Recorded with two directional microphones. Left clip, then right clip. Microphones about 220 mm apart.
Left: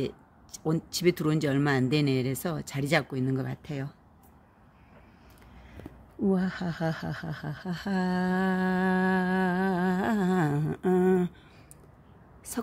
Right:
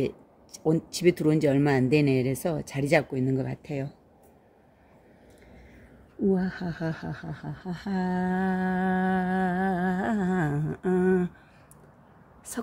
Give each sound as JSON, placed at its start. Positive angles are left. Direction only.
{"t": 0.0, "sound": "speech", "side_deg": 10}
{"t": 6.3, "sound": "speech", "side_deg": 25}